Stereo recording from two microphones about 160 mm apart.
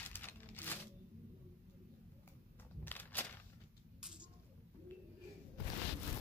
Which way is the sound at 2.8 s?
10° left (ahead or behind).